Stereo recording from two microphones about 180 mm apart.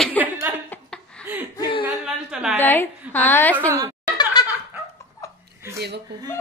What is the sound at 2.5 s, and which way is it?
A woman's voice, 10° left (ahead or behind).